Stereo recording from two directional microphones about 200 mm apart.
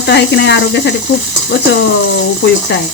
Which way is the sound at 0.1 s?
60° left (ahead or behind).